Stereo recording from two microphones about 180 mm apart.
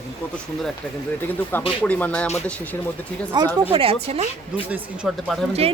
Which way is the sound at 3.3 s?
25° right (ahead or behind).